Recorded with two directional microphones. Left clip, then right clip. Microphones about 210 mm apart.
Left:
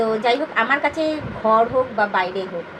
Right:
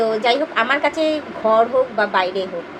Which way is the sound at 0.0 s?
20° right (ahead or behind).